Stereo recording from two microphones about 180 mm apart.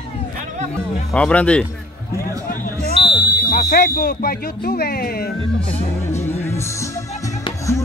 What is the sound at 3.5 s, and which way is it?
Speech, 55° left (ahead or behind).